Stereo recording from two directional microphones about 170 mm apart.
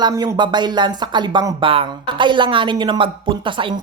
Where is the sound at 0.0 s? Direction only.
20° right (ahead or behind).